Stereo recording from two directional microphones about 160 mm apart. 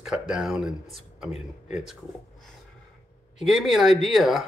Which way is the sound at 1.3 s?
45° left (ahead or behind).